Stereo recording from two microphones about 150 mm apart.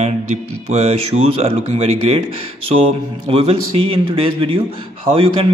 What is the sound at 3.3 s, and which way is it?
A man's voice, 40° right (ahead or behind).